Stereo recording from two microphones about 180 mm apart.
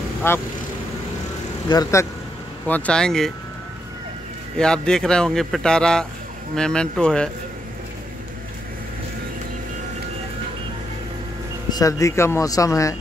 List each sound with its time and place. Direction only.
0.2 s speech: 15° left (ahead or behind)
1.7 s speech: 20° left (ahead or behind)
2.6 s speech: 5° left (ahead or behind)
4.6 s speech: 5° left (ahead or behind)
11.7 s speech: 20° left (ahead or behind)